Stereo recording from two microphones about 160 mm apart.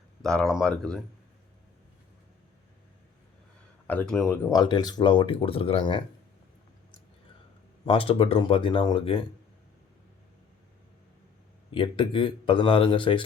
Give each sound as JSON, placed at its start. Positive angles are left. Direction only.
{"t": 0.2, "sound": "speech", "side_deg": 5}
{"t": 3.8, "sound": "speech", "side_deg": 10}
{"t": 4.4, "sound": "speech", "side_deg": 25}
{"t": 7.9, "sound": "speech", "side_deg": 35}
{"t": 11.7, "sound": "speech", "side_deg": 30}